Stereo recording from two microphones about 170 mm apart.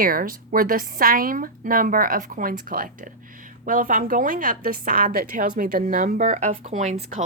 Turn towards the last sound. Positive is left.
turn(degrees=-45)  # may be behind; listen again after turning